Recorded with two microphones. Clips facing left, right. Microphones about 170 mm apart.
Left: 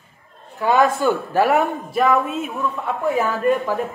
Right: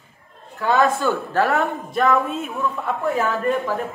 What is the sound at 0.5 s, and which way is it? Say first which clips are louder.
Speech: left 2 dB; 15° left (ahead or behind).